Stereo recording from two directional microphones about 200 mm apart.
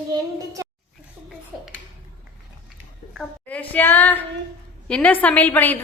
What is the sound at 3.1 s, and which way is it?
A woman's voice, 5° left (ahead or behind).